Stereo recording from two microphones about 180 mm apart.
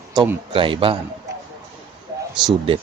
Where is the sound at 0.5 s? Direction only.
30° right (ahead or behind).